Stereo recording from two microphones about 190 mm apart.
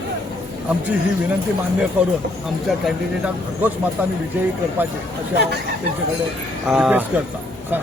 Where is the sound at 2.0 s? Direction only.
10° right (ahead or behind).